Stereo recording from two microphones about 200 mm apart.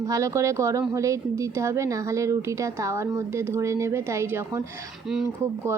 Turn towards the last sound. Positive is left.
turn(degrees=-15)  # may be behind; listen again after turning